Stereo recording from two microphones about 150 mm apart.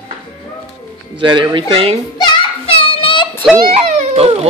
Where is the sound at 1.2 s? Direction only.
30° right (ahead or behind).